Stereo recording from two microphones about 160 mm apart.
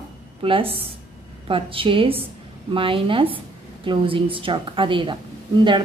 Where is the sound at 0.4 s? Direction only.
35° right (ahead or behind).